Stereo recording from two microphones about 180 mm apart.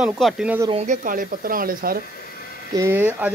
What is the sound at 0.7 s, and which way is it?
Speech, 45° right (ahead or behind).